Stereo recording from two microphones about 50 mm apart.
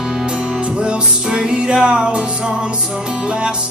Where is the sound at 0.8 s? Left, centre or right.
Centre.